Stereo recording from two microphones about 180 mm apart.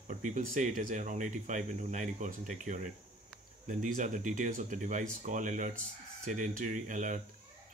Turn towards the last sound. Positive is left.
turn(degrees=-45)  # may be behind; listen again after turning